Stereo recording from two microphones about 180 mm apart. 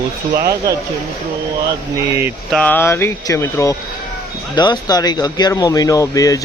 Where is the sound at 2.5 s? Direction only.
10° left (ahead or behind).